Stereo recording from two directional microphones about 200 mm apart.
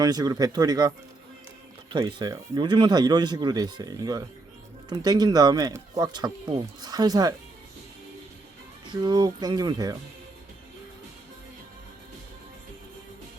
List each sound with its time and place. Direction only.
0.0 s speech: 20° right (ahead or behind)
8.9 s speech: 20° right (ahead or behind)